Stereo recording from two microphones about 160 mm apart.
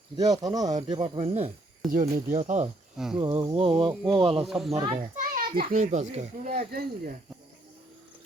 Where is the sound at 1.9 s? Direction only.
55° right (ahead or behind).